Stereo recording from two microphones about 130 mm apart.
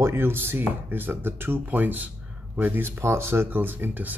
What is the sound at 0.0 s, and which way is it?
Speech, 20° right (ahead or behind).